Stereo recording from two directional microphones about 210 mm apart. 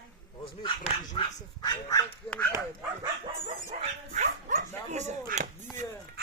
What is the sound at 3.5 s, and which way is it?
Speech, 30° right (ahead or behind).